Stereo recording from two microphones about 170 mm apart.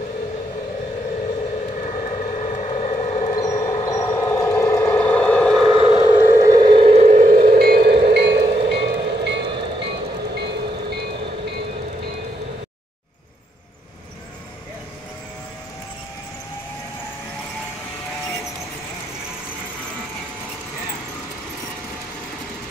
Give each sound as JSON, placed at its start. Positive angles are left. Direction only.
{"t": 1.9, "sound": "vehicle", "side_deg": 45}
{"t": 3.3, "sound": "siren", "side_deg": 20}
{"t": 4.0, "sound": "vehicle", "side_deg": 15}
{"t": 5.6, "sound": "vehicle", "side_deg": -30}
{"t": 6.1, "sound": "a sound", "side_deg": -15}
{"t": 6.7, "sound": "vehicle", "side_deg": -35}
{"t": 8.8, "sound": "train", "side_deg": -90}
{"t": 9.5, "sound": "train", "side_deg": -30}
{"t": 10.3, "sound": "train", "side_deg": -75}